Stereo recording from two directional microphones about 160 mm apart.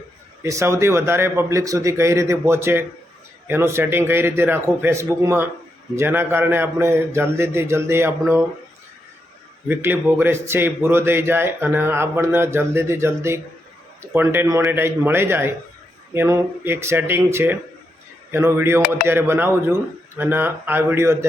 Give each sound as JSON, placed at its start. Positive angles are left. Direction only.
{"t": 0.4, "sound": "a man's voice", "side_deg": -20}
{"t": 9.6, "sound": "a man's voice", "side_deg": -15}